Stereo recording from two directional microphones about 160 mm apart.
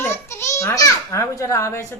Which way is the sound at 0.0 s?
15° left (ahead or behind).